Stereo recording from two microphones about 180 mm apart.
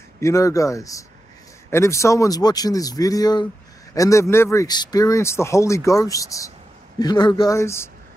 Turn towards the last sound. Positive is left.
turn(degrees=15)  # may be behind; listen again after turning